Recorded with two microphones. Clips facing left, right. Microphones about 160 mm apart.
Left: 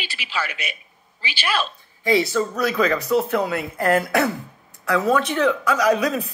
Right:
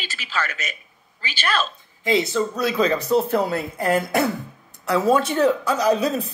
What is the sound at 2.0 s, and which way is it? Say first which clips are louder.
Speech: left 1 dB; 20° right (ahead or behind).